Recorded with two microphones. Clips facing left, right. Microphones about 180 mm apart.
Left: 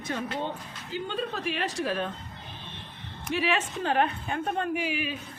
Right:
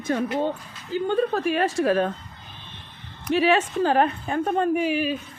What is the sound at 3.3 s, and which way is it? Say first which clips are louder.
A woman's voice: right 8 dB; 40° right (ahead or behind).